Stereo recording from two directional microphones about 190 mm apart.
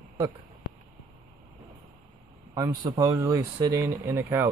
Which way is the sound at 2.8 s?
20° right (ahead or behind).